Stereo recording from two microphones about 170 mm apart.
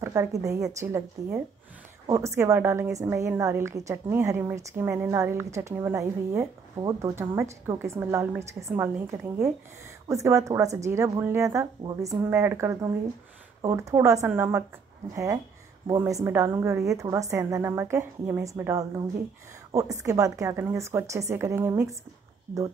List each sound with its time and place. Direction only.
0.0 s a woman's voice: 15° right (ahead or behind)
10.0 s a woman's voice: 20° right (ahead or behind)
16.0 s a woman's voice: 15° right (ahead or behind)